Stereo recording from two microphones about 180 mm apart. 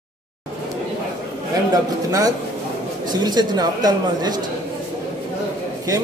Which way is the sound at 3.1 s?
25° right (ahead or behind).